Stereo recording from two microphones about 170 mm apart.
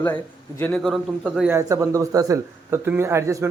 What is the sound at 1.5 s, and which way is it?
Speech, 20° right (ahead or behind).